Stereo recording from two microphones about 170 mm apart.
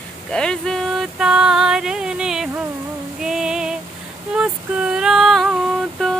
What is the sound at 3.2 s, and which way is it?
Female singing, 5° right (ahead or behind).